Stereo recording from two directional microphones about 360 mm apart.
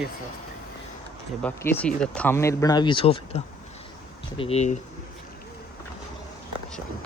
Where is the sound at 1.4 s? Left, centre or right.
Centre.